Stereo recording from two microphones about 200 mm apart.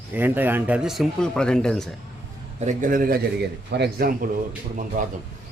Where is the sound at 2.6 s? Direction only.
40° right (ahead or behind).